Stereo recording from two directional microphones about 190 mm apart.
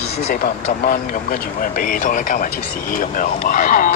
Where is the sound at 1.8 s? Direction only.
45° left (ahead or behind).